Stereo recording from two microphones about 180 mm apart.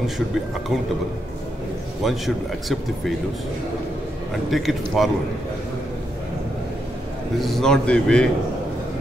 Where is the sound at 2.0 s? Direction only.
Centre (ahead or behind).